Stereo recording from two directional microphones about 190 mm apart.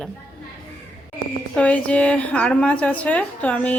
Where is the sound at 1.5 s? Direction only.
5° left (ahead or behind).